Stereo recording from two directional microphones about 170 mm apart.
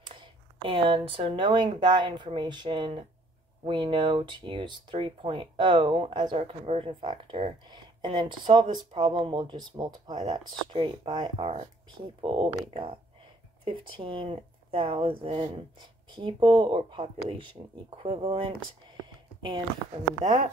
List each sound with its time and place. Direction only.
0.0 s speech: 30° right (ahead or behind)